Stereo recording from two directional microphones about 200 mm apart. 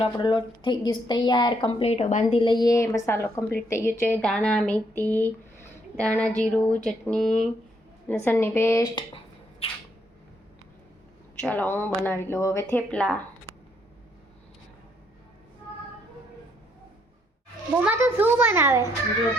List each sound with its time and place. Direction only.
0.0 s a woman's voice: 25° left (ahead or behind)
2.4 s a woman's voice: 20° left (ahead or behind)
11.3 s a woman's voice: 10° left (ahead or behind)
17.7 s a child's voice: 10° right (ahead or behind)